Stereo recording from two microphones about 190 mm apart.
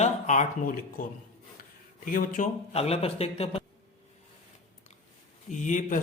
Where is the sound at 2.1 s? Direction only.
45° left (ahead or behind).